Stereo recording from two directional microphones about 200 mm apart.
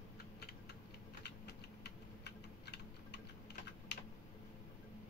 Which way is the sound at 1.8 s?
55° left (ahead or behind).